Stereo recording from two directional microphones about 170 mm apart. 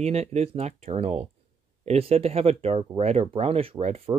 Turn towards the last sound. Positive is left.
turn(degrees=-35)  # may be behind; listen again after turning